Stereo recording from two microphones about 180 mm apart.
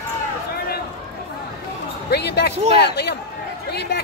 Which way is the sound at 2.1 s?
65° left (ahead or behind).